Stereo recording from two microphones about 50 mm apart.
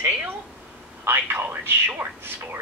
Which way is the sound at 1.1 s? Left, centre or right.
Right.